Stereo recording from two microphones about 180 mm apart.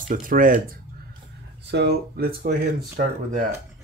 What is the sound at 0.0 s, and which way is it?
Speech, 50° right (ahead or behind).